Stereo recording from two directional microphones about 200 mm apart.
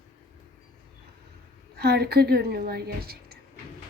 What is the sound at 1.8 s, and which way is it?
A woman's voice, 55° right (ahead or behind).